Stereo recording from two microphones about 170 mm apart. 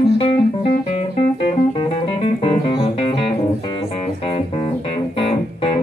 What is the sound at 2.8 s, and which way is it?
Music, 30° left (ahead or behind).